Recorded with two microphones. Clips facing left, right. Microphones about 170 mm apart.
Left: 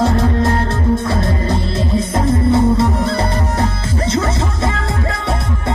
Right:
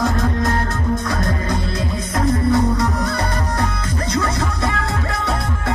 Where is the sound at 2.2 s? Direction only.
25° left (ahead or behind).